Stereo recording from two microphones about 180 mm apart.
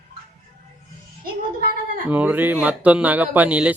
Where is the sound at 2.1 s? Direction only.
10° right (ahead or behind).